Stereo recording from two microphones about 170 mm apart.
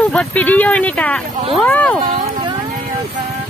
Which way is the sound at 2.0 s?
35° right (ahead or behind).